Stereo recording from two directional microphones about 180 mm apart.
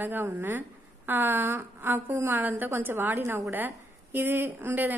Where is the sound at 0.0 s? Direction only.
10° right (ahead or behind).